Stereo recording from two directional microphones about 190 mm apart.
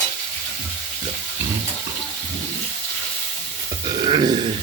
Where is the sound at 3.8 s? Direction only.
25° right (ahead or behind).